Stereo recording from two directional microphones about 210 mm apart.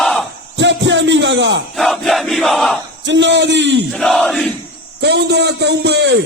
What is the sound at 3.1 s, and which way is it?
Speech, 55° right (ahead or behind).